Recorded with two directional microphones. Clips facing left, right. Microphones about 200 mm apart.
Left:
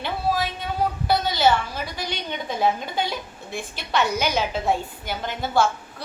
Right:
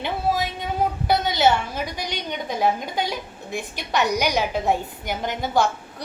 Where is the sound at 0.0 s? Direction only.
20° right (ahead or behind).